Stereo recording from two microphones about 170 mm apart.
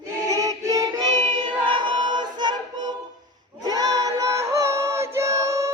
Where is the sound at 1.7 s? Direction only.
30° right (ahead or behind).